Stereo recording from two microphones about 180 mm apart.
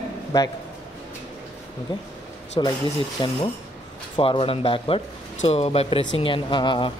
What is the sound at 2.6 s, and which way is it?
Speech, 25° left (ahead or behind).